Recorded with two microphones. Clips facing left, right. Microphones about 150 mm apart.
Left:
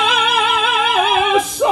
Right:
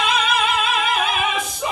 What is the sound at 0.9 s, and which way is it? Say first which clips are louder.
Opera: left 7 dB; 90° left.